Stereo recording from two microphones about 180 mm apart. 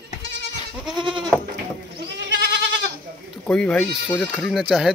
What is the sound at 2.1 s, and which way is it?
Goat, 75° right (ahead or behind).